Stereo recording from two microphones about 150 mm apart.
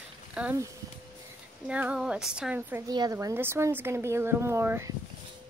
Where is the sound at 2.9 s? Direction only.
25° right (ahead or behind).